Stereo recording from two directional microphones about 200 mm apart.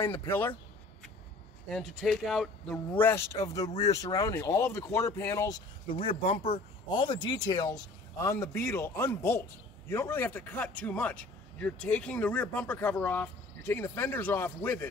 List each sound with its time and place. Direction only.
0.3 s speech: 10° left (ahead or behind)
1.7 s speech: centre (ahead or behind)
3.0 s speech: 10° left (ahead or behind)
5.9 s speech: 25° left (ahead or behind); by 14.9 s 10° left (ahead or behind)